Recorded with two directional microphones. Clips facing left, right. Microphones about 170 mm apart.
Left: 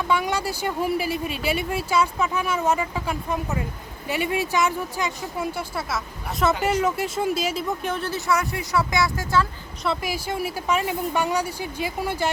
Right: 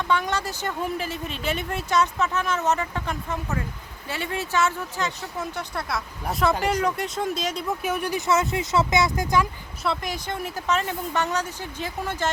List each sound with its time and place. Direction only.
0.0 s speech: 10° left (ahead or behind)
7.8 s speech: 10° right (ahead or behind)
9.8 s speech: 5° left (ahead or behind)